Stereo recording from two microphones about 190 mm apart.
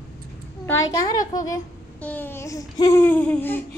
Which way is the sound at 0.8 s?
20° left (ahead or behind).